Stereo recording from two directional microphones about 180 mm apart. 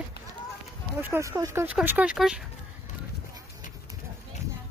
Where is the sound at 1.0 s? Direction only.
15° right (ahead or behind).